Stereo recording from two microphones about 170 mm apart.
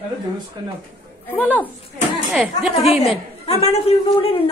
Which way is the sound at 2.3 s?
Centre (ahead or behind).